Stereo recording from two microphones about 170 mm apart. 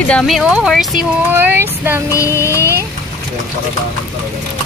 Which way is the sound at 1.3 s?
15° right (ahead or behind).